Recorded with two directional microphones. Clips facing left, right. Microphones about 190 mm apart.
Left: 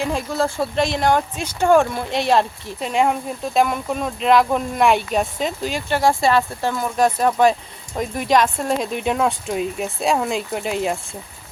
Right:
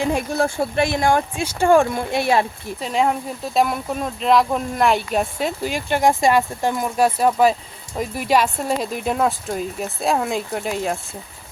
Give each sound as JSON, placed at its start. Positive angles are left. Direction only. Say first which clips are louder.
{"t": 0.0, "sound": "speech", "louder": "right 1 dB", "side_deg": -15}
{"t": 2.8, "sound": "speech", "louder": "left 1 dB", "side_deg": 0}